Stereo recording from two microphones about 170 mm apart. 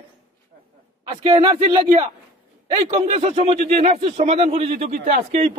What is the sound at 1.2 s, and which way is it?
Speech, 30° right (ahead or behind).